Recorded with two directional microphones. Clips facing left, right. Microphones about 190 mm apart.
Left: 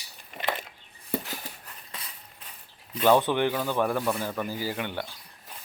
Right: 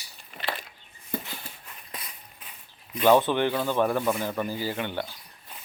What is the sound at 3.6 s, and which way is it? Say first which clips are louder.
Speech: right 2 dB; 15° right (ahead or behind).